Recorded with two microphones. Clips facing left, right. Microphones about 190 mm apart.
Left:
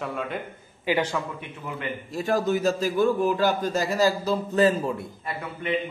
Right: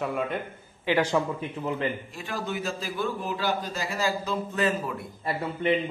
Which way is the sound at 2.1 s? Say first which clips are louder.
Left 9 dB; 40° left (ahead or behind).